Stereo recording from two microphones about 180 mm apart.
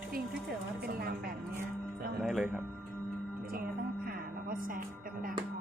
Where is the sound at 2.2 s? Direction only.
Centre (ahead or behind).